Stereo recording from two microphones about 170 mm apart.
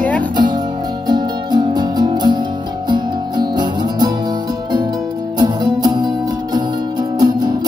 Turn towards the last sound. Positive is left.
turn(degrees=-25)  # may be behind; listen again after turning